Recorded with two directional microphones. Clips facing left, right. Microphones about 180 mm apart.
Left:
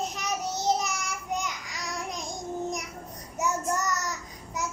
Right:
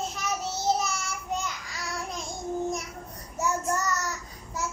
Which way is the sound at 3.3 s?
15° left (ahead or behind).